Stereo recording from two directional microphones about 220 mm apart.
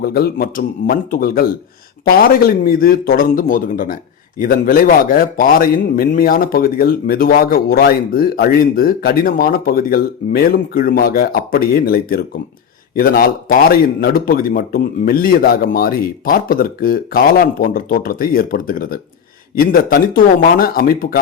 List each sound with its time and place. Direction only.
0.0 s a man's voice: 45° left (ahead or behind)